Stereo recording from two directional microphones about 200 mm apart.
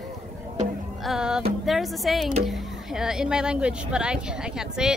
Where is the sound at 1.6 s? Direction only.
Centre (ahead or behind).